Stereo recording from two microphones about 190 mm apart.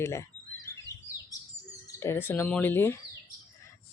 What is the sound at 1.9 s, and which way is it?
Bird, 15° left (ahead or behind).